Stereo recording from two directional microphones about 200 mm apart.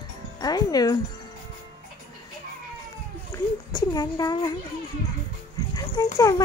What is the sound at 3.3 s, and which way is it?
A child's voice, 20° left (ahead or behind).